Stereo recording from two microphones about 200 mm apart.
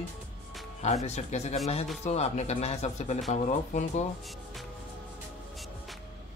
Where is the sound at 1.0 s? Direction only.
35° left (ahead or behind).